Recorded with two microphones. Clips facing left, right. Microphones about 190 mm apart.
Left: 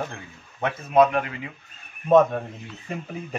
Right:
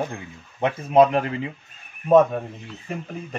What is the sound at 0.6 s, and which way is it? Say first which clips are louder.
Speech: right 2 dB; 30° right (ahead or behind).